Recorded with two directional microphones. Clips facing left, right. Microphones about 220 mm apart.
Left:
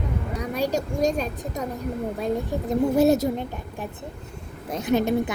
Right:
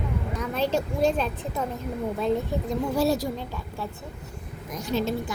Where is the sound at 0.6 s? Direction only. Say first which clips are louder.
Even; 40° left (ahead or behind).